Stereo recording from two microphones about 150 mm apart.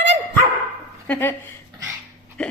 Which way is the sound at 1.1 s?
15° left (ahead or behind).